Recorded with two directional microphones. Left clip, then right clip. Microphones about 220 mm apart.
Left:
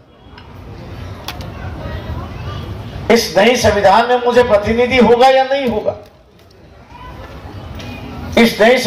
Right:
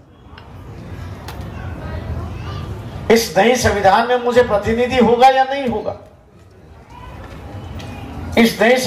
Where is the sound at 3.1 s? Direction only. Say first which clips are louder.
Left 2 dB; 25° left (ahead or behind).